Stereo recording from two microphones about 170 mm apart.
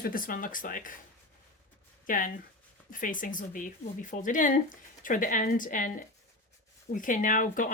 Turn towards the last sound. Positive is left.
turn(degrees=50)  # may be behind; listen again after turning